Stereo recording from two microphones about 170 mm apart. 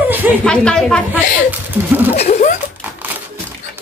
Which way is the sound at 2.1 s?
40° left (ahead or behind).